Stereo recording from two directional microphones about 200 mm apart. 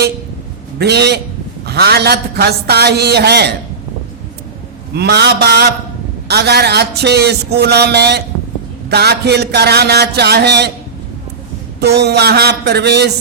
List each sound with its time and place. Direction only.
0.8 s a man's voice: 55° right (ahead or behind)
4.9 s a man's voice: 55° right (ahead or behind)
11.8 s a man's voice: 55° right (ahead or behind)